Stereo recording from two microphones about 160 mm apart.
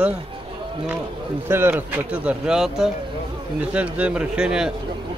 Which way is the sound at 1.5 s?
15° right (ahead or behind).